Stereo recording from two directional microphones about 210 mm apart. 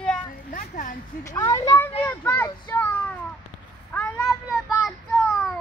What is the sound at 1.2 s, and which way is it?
Speech, 15° left (ahead or behind).